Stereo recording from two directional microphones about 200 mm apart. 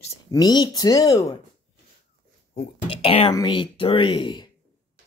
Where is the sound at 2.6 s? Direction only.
30° left (ahead or behind).